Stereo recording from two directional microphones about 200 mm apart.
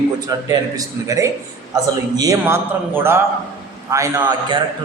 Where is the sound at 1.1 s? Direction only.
15° right (ahead or behind).